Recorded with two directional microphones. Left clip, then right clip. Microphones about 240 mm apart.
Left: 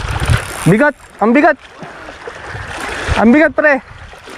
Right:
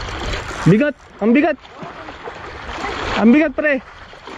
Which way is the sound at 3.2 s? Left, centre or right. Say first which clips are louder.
Left 5 dB; left.